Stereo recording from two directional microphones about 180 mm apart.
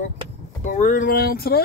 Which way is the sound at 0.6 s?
45° left (ahead or behind).